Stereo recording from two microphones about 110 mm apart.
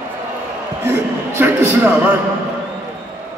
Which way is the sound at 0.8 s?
20° right (ahead or behind).